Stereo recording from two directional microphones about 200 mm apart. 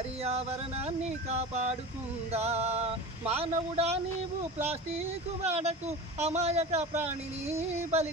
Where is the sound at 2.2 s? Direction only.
30° right (ahead or behind).